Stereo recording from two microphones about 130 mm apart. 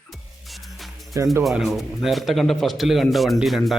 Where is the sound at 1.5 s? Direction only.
Centre (ahead or behind).